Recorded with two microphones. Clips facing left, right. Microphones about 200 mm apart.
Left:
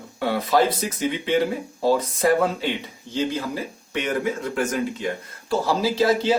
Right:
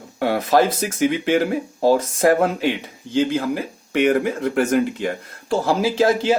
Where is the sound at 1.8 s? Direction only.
45° right (ahead or behind).